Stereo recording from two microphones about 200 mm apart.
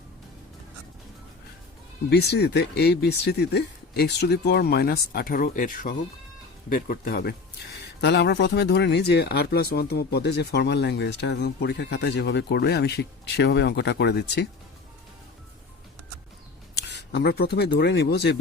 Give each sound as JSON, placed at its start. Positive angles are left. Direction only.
{"t": 2.0, "sound": "speech", "side_deg": 55}
{"t": 16.7, "sound": "speech", "side_deg": 55}